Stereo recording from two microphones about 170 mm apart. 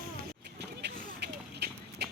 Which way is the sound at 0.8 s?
70° right (ahead or behind).